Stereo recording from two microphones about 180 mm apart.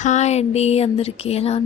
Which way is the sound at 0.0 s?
40° left (ahead or behind).